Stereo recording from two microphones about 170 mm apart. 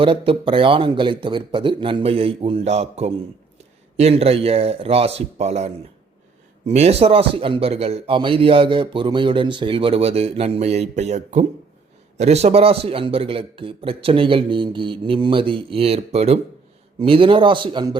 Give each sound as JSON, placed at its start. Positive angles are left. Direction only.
{"t": 0.0, "sound": "a man's voice", "side_deg": -30}